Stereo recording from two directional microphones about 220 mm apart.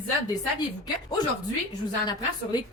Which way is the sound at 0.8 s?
20° left (ahead or behind).